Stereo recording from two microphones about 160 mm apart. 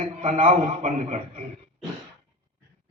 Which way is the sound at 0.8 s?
50° right (ahead or behind).